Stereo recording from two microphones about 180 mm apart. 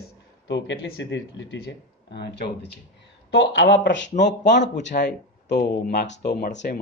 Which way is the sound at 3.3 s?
80° left.